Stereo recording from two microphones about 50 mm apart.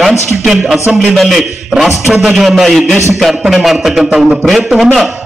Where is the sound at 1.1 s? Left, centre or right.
Centre.